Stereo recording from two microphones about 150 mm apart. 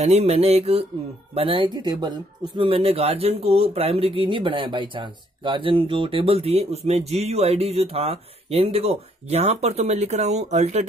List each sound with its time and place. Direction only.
0.0 s mantra: 45° right (ahead or behind)
1.3 s speech: 40° right (ahead or behind)